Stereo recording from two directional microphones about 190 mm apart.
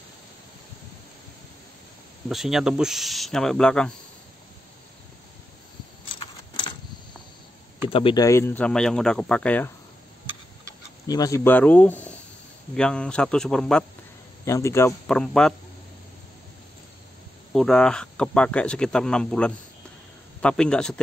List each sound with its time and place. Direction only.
2.2 s speech: centre (ahead or behind)
6.0 s keys jangling: 25° left (ahead or behind)
7.9 s speech: 25° left (ahead or behind); by 9.7 s 5° left (ahead or behind)
11.1 s speech: 20° left (ahead or behind); by 13.8 s 5° left (ahead or behind)
14.4 s speech: 15° left (ahead or behind)
15.0 s speech: 5° left (ahead or behind)
17.5 s speech: 5° left (ahead or behind)